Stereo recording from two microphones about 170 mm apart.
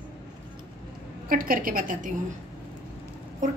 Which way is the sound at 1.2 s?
55° right (ahead or behind).